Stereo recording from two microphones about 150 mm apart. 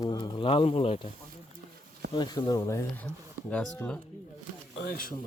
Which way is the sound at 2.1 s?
30° left (ahead or behind).